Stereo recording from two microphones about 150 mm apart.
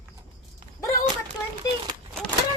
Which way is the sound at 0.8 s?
20° left (ahead or behind).